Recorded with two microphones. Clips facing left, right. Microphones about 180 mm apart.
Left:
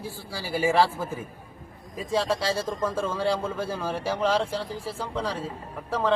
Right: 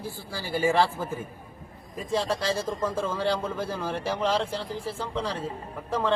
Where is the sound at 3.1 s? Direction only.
10° left (ahead or behind).